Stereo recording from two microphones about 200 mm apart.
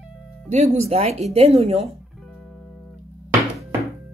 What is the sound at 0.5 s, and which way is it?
A woman's voice, 35° right (ahead or behind).